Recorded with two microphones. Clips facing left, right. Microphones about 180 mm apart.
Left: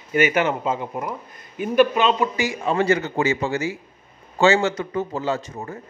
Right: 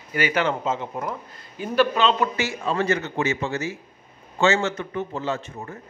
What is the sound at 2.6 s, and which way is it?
A man's voice, 30° left (ahead or behind).